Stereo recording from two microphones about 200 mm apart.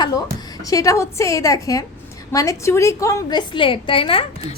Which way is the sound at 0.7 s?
15° left (ahead or behind).